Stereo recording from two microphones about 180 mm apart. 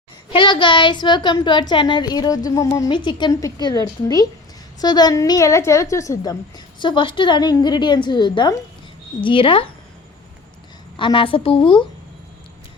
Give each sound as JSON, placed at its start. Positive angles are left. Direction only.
{"t": 0.3, "sound": "a woman's voice", "side_deg": 25}
{"t": 4.8, "sound": "a woman's voice", "side_deg": 20}
{"t": 10.9, "sound": "a woman's voice", "side_deg": 30}